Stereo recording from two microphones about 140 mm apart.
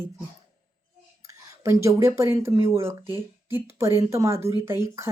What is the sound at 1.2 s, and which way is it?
Speech, 20° right (ahead or behind).